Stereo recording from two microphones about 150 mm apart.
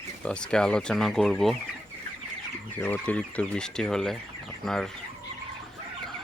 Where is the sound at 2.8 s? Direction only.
10° left (ahead or behind).